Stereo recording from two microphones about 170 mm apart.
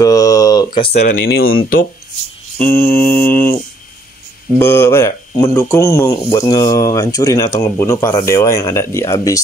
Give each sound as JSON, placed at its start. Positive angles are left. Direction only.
{"t": 0.0, "sound": "a sound", "side_deg": 20}
{"t": 0.7, "sound": "speech", "side_deg": 30}
{"t": 1.0, "sound": "speech", "side_deg": 65}
{"t": 2.6, "sound": "speech", "side_deg": 10}